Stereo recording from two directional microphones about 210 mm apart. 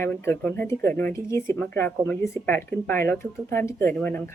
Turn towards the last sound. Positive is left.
turn(degrees=10)  # may be behind; listen again after turning